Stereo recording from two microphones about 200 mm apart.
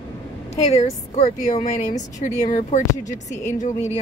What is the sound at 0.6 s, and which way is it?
A woman's voice, 30° left (ahead or behind).